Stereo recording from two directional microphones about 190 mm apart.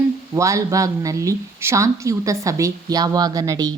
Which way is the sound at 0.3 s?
15° right (ahead or behind).